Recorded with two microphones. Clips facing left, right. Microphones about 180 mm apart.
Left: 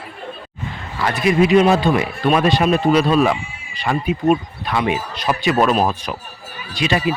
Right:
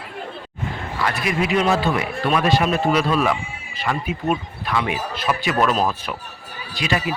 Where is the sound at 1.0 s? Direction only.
25° left (ahead or behind).